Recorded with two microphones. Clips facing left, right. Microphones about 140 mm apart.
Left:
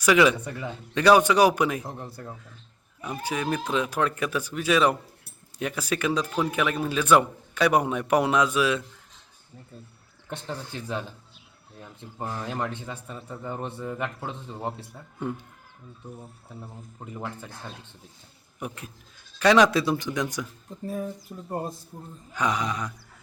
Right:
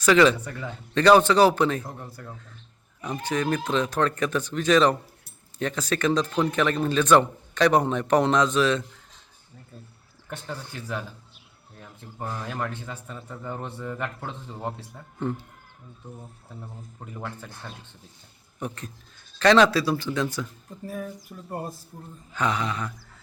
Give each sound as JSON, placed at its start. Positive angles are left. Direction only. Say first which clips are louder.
{"t": 0.0, "sound": "speech", "louder": "right 1 dB", "side_deg": 10}
{"t": 3.0, "sound": "speech", "louder": "right 3 dB", "side_deg": 10}
{"t": 10.2, "sound": "speech", "louder": "left 1 dB", "side_deg": 25}
{"t": 18.6, "sound": "speech", "louder": "right 2 dB", "side_deg": 10}
{"t": 20.8, "sound": "speech", "louder": "left 2 dB", "side_deg": 25}
{"t": 22.3, "sound": "speech", "louder": "even", "side_deg": 15}